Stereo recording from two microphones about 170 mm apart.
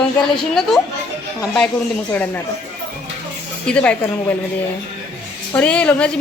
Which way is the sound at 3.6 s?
5° left (ahead or behind).